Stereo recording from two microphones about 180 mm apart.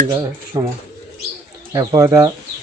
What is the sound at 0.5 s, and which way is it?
Speech, 20° right (ahead or behind).